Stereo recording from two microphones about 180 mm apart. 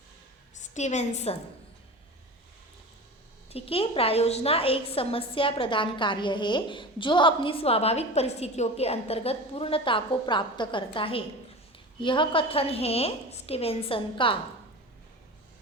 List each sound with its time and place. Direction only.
0.5 s a woman's voice: 40° left (ahead or behind)
3.5 s a woman's voice: 30° left (ahead or behind)